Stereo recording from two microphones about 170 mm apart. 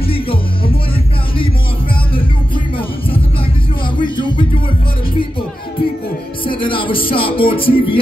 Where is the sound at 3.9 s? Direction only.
30° left (ahead or behind).